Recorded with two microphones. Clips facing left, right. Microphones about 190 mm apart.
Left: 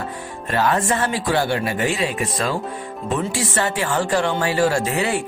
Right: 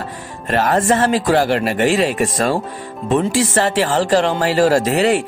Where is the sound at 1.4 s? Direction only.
90° right.